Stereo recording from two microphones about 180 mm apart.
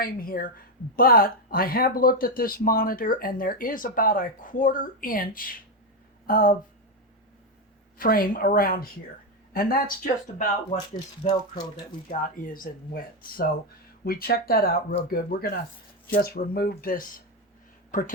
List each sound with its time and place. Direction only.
0.0 s speech: 55° left (ahead or behind)
7.9 s speech: 55° left (ahead or behind)
11.2 s speech: 25° left (ahead or behind)
12.2 s speech: 50° left (ahead or behind)